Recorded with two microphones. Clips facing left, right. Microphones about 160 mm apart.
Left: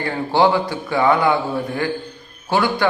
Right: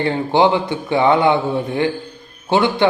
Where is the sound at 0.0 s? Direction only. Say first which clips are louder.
Right 2 dB; 20° right (ahead or behind).